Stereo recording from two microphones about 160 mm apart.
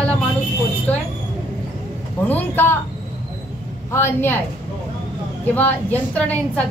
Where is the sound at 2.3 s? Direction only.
10° left (ahead or behind).